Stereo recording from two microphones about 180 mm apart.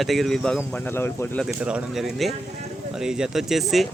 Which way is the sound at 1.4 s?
5° right (ahead or behind).